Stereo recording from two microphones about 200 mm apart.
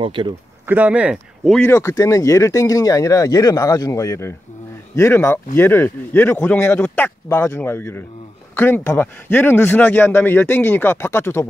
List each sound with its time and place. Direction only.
0.0 s speech: 25° right (ahead or behind)
0.7 s speech: 5° right (ahead or behind)
1.6 s a man's voice: 15° left (ahead or behind)